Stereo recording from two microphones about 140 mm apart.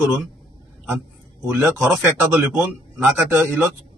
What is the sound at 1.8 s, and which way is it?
A man's voice, centre (ahead or behind).